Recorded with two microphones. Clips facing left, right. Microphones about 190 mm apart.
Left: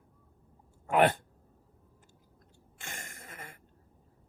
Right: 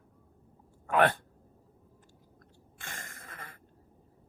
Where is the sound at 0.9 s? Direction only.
20° left (ahead or behind).